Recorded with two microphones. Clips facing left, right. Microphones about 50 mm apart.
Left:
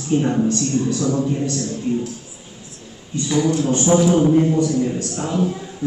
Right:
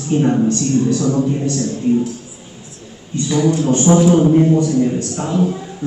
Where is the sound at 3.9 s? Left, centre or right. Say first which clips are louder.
Right 3 dB; centre.